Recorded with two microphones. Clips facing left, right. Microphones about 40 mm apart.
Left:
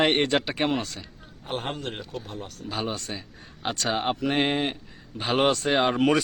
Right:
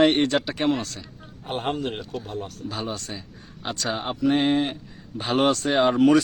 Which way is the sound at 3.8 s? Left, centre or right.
Left.